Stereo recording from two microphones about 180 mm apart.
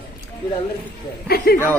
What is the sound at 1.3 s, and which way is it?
Speech, 60° left (ahead or behind).